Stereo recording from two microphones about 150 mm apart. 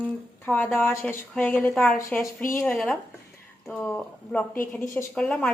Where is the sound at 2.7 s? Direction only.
Centre (ahead or behind).